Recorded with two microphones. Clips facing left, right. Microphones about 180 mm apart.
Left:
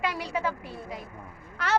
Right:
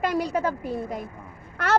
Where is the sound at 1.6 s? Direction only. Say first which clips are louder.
Right 4 dB; 50° right (ahead or behind).